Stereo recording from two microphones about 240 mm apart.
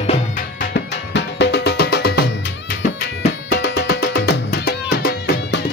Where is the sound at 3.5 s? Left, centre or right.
Left.